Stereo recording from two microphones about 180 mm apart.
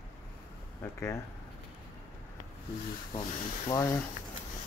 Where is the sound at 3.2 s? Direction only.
20° left (ahead or behind).